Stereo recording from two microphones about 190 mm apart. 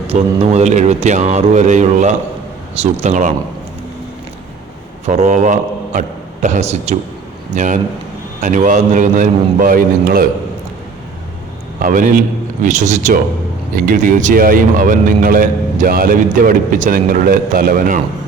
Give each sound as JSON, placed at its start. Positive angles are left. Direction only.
{"t": 0.1, "sound": "a man's voice", "side_deg": -35}
{"t": 5.0, "sound": "a man's voice", "side_deg": -40}
{"t": 11.8, "sound": "a man's voice", "side_deg": -45}